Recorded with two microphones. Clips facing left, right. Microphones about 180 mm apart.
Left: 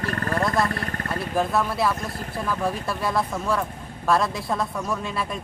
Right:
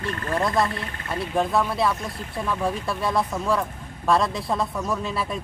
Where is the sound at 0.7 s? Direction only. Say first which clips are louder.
Left 2 dB; 50° left (ahead or behind).